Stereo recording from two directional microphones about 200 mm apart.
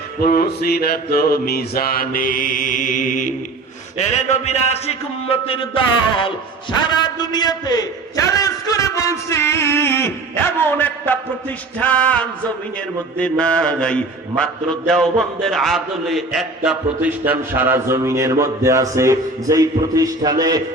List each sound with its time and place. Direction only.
0.2 s mantra: 45° left (ahead or behind)
3.9 s a man's voice: 35° left (ahead or behind); by 11.2 s 10° left (ahead or behind)
11.8 s a sound: 5° left (ahead or behind)
13.1 s mantra: 5° left (ahead or behind); by 20.6 s 20° right (ahead or behind)